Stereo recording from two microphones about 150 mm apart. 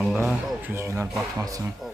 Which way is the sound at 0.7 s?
20° right (ahead or behind).